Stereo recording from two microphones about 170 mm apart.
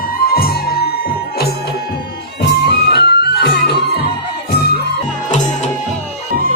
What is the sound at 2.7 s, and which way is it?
Music, 70° left (ahead or behind).